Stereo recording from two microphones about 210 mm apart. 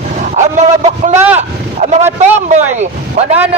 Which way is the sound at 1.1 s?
10° right (ahead or behind).